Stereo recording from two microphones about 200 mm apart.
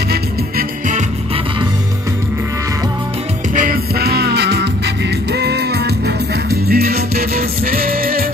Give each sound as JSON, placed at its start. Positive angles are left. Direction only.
{"t": 0.1, "sound": "music", "side_deg": -45}
{"t": 3.5, "sound": "music", "side_deg": -45}